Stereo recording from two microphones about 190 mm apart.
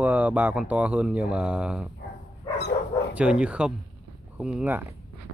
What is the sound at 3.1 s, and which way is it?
Speech, 5° right (ahead or behind).